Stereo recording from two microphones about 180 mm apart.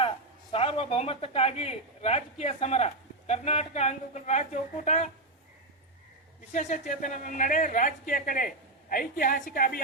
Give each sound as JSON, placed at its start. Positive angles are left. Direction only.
{"t": 0.5, "sound": "a man's voice", "side_deg": 30}
{"t": 6.5, "sound": "a man's voice", "side_deg": 40}